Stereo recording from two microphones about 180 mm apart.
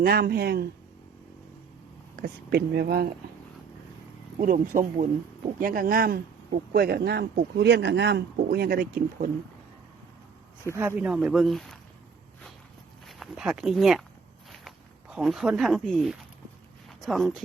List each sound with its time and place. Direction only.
0.0 s speech: 60° right (ahead or behind)
2.1 s speech: 60° right (ahead or behind)
4.4 s speech: 50° right (ahead or behind)
10.8 s speech: 10° right (ahead or behind)
13.1 s speech: centre (ahead or behind)
15.1 s speech: centre (ahead or behind)